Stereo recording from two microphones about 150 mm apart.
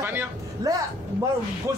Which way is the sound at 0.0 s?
15° right (ahead or behind).